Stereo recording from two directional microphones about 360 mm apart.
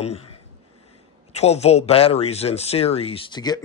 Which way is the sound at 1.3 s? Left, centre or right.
Centre.